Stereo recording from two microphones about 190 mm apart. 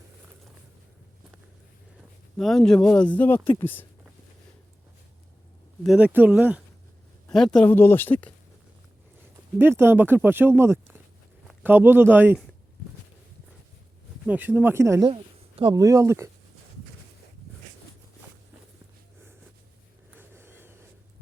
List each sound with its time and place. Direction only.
2.4 s speech: centre (ahead or behind)
5.8 s speech: 5° right (ahead or behind)
7.3 s speech: 5° left (ahead or behind)
9.6 s speech: 10° right (ahead or behind)
14.3 s speech: 10° right (ahead or behind)
15.1 s a sound: 30° right (ahead or behind)
15.7 s speech: 15° right (ahead or behind)
20.1 s vehicle: 10° right (ahead or behind)